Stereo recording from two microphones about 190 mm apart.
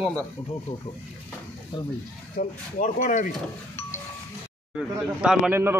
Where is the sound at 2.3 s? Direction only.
45° left (ahead or behind).